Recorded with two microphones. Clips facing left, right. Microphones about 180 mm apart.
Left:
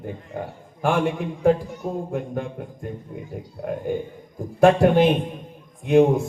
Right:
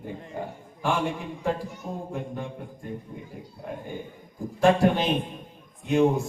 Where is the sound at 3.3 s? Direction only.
55° left (ahead or behind).